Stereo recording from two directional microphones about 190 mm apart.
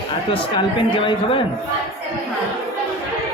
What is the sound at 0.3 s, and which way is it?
Speech, 25° left (ahead or behind).